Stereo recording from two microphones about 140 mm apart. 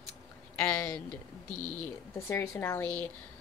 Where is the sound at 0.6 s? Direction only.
5° left (ahead or behind).